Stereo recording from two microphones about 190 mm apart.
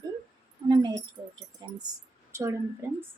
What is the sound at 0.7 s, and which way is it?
Keys jangling, 20° right (ahead or behind).